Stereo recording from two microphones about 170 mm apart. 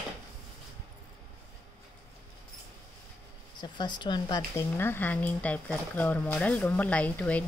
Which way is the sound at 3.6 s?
25° left (ahead or behind).